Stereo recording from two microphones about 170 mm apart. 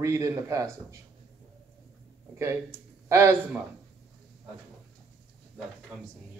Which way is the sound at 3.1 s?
15° right (ahead or behind).